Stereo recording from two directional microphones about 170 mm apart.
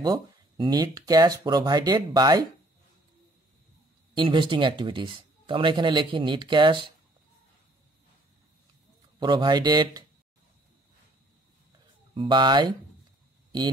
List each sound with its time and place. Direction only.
0.0 s speech: 25° right (ahead or behind)
4.1 s speech: 30° right (ahead or behind)
9.2 s speech: 25° right (ahead or behind)
12.1 s speech: 30° right (ahead or behind)